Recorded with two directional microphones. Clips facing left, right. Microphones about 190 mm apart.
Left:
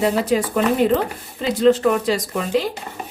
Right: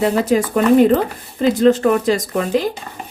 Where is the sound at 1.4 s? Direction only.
45° right (ahead or behind).